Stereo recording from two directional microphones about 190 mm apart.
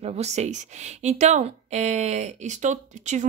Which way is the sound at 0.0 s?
35° right (ahead or behind).